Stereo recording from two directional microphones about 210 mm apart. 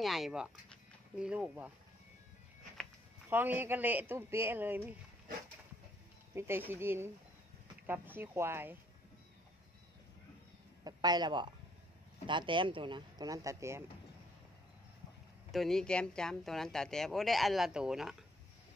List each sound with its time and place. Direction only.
0.0 s speech: centre (ahead or behind)
3.3 s speech: 10° right (ahead or behind)
6.3 s speech: 10° right (ahead or behind)
10.8 s speech: 20° right (ahead or behind)
15.5 s speech: centre (ahead or behind)